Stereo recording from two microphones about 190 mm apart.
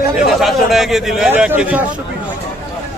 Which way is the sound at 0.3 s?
Centre (ahead or behind).